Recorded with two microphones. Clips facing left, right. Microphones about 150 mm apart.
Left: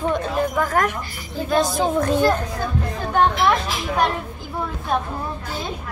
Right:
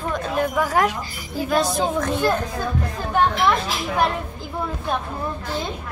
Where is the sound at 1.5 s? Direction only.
Centre (ahead or behind).